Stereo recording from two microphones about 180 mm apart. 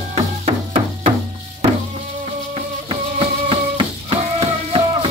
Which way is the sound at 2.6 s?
30° right (ahead or behind).